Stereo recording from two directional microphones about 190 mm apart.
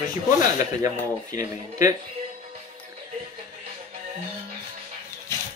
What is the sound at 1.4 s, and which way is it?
Speech, 15° right (ahead or behind).